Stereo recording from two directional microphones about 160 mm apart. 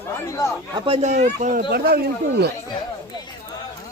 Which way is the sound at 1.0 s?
50° right (ahead or behind).